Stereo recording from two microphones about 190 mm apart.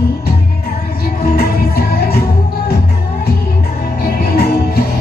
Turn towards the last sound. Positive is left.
turn(degrees=50)  # may be behind; listen again after turning